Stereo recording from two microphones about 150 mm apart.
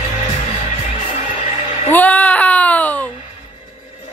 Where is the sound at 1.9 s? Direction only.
10° left (ahead or behind).